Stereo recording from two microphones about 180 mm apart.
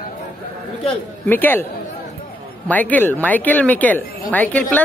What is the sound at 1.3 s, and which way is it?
Speech, 10° left (ahead or behind).